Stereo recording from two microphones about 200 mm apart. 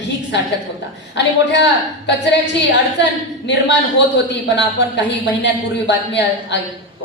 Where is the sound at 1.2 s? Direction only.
60° left (ahead or behind).